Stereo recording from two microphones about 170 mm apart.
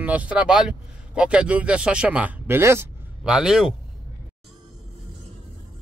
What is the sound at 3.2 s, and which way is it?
Speech, 5° right (ahead or behind).